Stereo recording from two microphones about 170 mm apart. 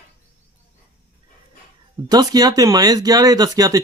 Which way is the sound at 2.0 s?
25° right (ahead or behind).